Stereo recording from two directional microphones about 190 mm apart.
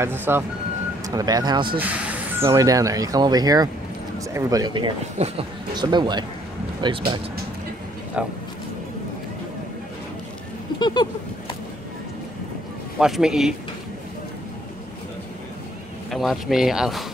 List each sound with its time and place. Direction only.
0.0 s speech: 10° right (ahead or behind)
1.8 s speech: 10° right (ahead or behind)
5.2 s speech: 35° right (ahead or behind)
5.8 s speech: 25° right (ahead or behind)
8.2 s speech: 5° right (ahead or behind)
10.8 s a sound: 25° left (ahead or behind)
13.0 s speech: 5° right (ahead or behind)
16.1 s speech: centre (ahead or behind)